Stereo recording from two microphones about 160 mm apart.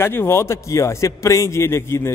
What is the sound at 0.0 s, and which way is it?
A man's voice, 15° left (ahead or behind).